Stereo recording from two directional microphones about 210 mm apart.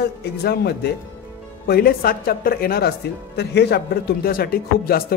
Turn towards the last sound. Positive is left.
turn(degrees=45)  # may be behind; listen again after turning